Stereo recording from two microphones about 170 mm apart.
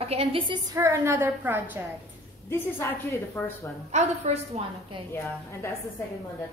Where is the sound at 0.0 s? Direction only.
35° right (ahead or behind).